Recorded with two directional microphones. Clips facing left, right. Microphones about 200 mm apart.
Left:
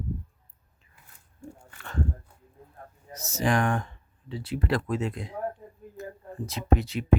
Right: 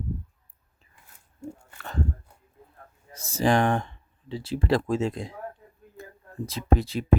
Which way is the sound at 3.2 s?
30° right (ahead or behind).